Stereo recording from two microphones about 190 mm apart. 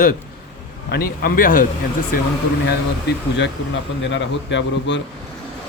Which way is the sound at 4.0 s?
70° left (ahead or behind).